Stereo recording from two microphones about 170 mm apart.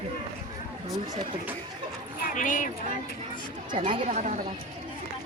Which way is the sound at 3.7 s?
30° right (ahead or behind).